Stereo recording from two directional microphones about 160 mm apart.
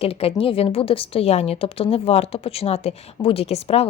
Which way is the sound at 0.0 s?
35° left (ahead or behind).